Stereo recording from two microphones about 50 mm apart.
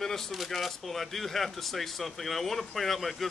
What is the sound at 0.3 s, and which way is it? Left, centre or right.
Speech, centre.